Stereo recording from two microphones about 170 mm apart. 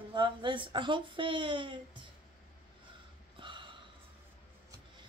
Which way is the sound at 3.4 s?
30° right (ahead or behind).